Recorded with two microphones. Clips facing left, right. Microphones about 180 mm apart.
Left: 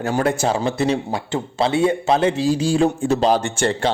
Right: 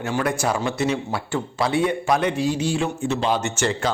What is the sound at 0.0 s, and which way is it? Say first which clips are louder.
A man's voice: left 4 dB; 35° left (ahead or behind).